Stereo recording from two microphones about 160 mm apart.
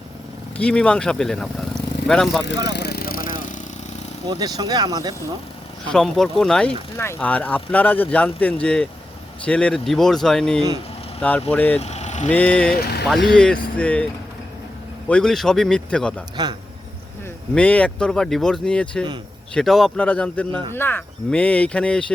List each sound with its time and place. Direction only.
0.5 s speech: 5° left (ahead or behind)
2.6 s vehicle: 90° left; by 3.6 s 55° left (ahead or behind)
4.3 s speech: 25° right (ahead or behind)
5.9 s speech: centre (ahead or behind)
6.9 s speech: 15° left (ahead or behind)
11.8 s vehicle: 45° left (ahead or behind)
12.3 s speech: 10° left (ahead or behind)
12.8 s speech: 80° left
13.3 s speech: 5° left (ahead or behind)
15.1 s speech: 5° left (ahead or behind)
17.5 s speech: 10° left (ahead or behind)